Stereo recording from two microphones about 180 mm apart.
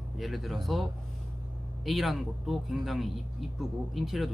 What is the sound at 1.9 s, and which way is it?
Speech, centre (ahead or behind).